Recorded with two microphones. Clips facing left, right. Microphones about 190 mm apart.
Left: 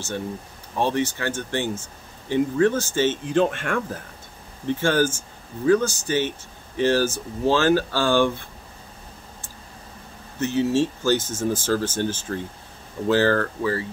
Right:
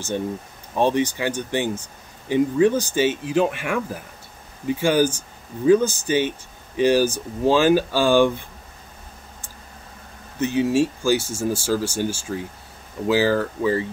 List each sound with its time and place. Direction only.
0.7 s speech: 15° right (ahead or behind)
10.4 s speech: 15° right (ahead or behind)